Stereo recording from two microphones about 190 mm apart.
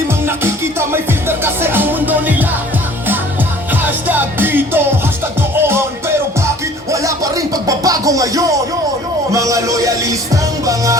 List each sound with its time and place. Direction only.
0.3 s music: 10° right (ahead or behind)
3.8 s music: 10° right (ahead or behind)
7.7 s speech: 20° right (ahead or behind)